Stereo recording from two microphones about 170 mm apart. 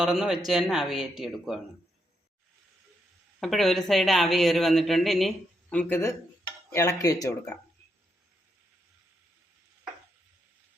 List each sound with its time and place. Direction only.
0.0 s speech: 5° right (ahead or behind)
3.4 s speech: centre (ahead or behind); by 7.6 s 20° left (ahead or behind)